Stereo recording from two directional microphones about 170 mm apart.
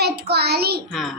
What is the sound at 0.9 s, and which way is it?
Speech, centre (ahead or behind).